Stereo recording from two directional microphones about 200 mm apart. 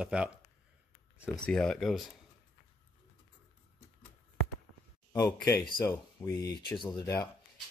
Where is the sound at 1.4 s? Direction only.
5° left (ahead or behind).